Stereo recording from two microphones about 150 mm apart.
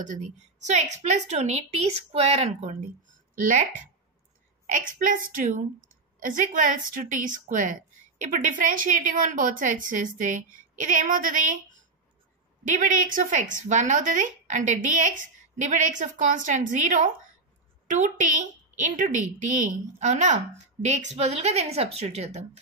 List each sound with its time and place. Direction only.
0.0 s a woman's voice: 55° right (ahead or behind)
4.6 s speech: 60° right (ahead or behind)
12.6 s a woman's voice: 60° right (ahead or behind)